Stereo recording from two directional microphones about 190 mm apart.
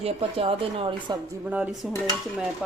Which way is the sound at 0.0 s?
30° right (ahead or behind).